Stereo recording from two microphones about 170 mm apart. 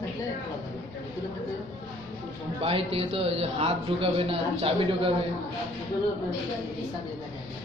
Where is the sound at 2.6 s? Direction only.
35° right (ahead or behind).